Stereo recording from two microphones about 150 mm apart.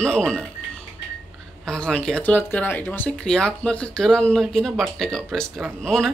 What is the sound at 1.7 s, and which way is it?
Speech, 5° left (ahead or behind).